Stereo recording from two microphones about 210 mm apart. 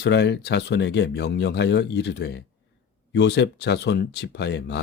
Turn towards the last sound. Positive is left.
turn(degrees=55)  # may be behind; listen again after turning